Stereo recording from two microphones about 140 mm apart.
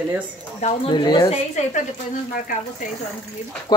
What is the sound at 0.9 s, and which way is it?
Speech, 30° left (ahead or behind).